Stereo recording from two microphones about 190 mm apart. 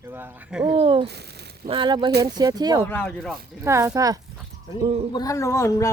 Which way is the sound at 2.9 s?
10° left (ahead or behind).